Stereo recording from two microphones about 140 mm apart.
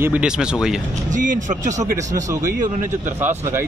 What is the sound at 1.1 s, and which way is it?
Speech, 65° right (ahead or behind).